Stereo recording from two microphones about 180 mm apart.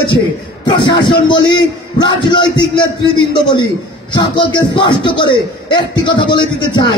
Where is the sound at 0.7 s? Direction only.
25° left (ahead or behind).